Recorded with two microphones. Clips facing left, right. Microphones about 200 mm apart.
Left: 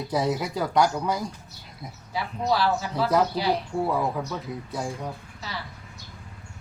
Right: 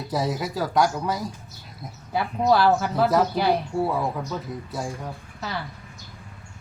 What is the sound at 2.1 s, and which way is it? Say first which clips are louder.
Speech: right 5 dB; 55° right (ahead or behind).